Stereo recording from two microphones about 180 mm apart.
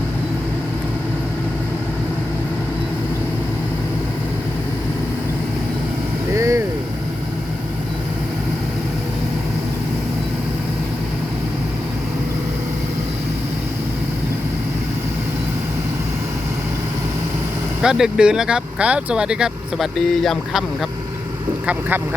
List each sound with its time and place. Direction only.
6.3 s vehicle: 15° right (ahead or behind)
17.8 s speech: 5° right (ahead or behind)
21.7 s speech: 10° right (ahead or behind)